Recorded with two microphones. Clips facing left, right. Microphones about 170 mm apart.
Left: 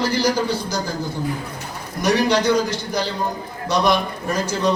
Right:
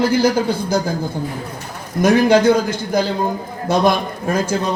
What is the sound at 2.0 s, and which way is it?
Speech, 50° right (ahead or behind).